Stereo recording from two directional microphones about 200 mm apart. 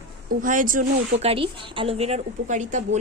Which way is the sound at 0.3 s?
40° right (ahead or behind).